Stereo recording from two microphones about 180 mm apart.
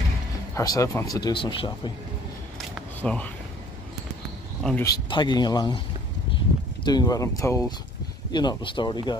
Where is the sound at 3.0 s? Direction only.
5° left (ahead or behind).